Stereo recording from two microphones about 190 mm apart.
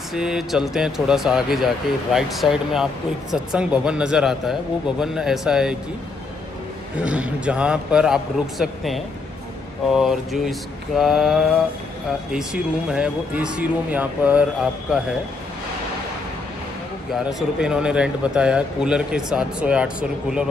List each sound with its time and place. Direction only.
0.1 s speech: centre (ahead or behind)
7.0 s speech: 5° right (ahead or behind)
17.1 s speech: centre (ahead or behind)